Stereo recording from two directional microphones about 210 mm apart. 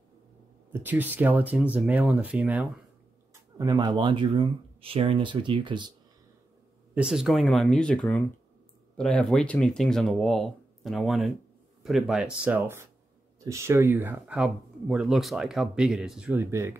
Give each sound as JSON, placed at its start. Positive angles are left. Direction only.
{"t": 0.7, "sound": "speech", "side_deg": -10}
{"t": 3.5, "sound": "speech", "side_deg": -20}
{"t": 6.9, "sound": "speech", "side_deg": -5}